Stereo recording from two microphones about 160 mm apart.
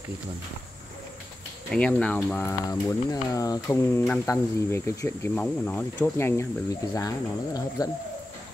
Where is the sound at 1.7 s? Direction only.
5° left (ahead or behind).